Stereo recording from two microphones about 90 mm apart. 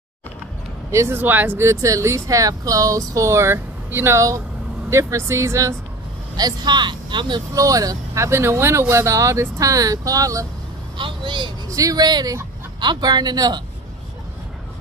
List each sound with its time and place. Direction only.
0.9 s speech: 25° right (ahead or behind)
1.7 s speech: 35° right (ahead or behind)
6.3 s speech: 50° right (ahead or behind)
7.5 s speech: 40° right (ahead or behind)
11.0 s speech: 65° right (ahead or behind)
11.7 s speech: 40° right (ahead or behind)